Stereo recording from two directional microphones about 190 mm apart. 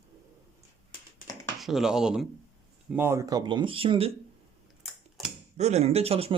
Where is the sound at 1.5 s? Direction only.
Centre (ahead or behind); by 4.1 s 30° right (ahead or behind).